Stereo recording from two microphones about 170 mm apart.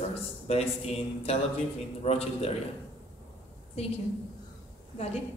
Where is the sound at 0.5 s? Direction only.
35° left (ahead or behind).